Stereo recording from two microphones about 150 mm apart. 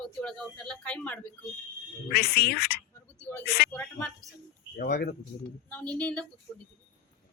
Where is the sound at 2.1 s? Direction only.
90° left.